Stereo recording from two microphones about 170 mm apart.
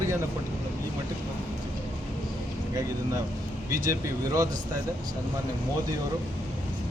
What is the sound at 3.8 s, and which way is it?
Speech, 20° right (ahead or behind).